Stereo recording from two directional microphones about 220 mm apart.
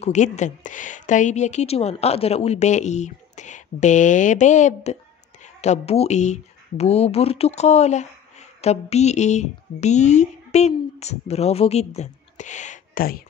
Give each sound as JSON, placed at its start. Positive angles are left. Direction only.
{"t": 0.0, "sound": "speech", "side_deg": 30}